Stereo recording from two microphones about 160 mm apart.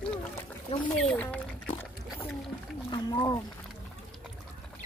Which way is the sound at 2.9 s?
25° left (ahead or behind).